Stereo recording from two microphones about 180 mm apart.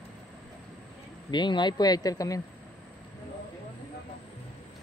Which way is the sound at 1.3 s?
25° left (ahead or behind).